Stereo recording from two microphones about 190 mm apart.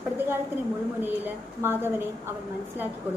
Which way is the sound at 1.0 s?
10° right (ahead or behind).